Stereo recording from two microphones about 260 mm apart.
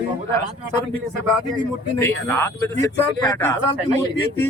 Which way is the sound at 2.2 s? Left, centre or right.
Centre.